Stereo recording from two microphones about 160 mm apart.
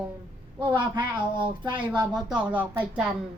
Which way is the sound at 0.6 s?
30° right (ahead or behind).